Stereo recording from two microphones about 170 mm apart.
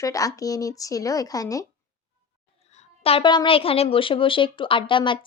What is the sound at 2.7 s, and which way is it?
A woman's voice, 40° left (ahead or behind).